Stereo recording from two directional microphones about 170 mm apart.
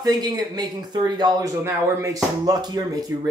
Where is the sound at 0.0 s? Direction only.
25° right (ahead or behind).